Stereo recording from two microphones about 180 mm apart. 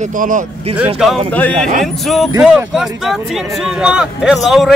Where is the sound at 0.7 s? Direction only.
10° right (ahead or behind).